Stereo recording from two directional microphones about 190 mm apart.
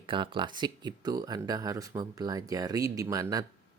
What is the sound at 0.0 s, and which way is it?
Speech, 25° right (ahead or behind).